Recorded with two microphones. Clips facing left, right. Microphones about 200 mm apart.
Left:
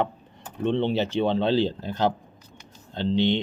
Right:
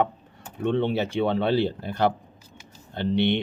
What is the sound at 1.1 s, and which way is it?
A man's voice, 10° right (ahead or behind).